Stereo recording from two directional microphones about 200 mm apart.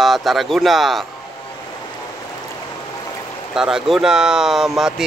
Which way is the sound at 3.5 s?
5° right (ahead or behind).